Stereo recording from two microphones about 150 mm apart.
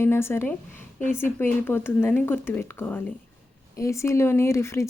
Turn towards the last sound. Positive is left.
turn(degrees=20)  # may be behind; listen again after turning